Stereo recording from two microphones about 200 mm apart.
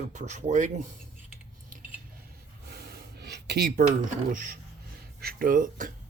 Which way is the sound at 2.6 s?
50° right (ahead or behind).